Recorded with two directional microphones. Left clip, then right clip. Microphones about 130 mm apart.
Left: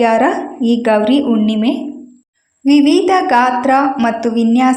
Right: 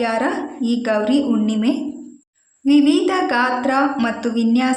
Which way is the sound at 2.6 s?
30° left (ahead or behind).